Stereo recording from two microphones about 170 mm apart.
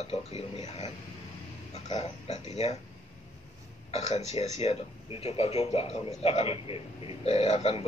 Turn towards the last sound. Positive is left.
turn(degrees=40)  # may be behind; listen again after turning